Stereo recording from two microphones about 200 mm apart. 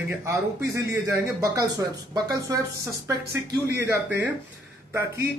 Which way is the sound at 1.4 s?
15° right (ahead or behind).